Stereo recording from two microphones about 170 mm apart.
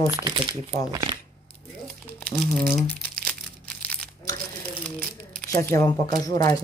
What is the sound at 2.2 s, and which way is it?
Speech, centre (ahead or behind).